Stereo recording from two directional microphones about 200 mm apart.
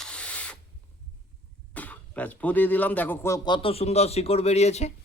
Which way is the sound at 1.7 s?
5° left (ahead or behind).